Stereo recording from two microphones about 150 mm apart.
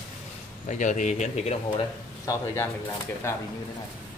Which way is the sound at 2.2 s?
20° left (ahead or behind).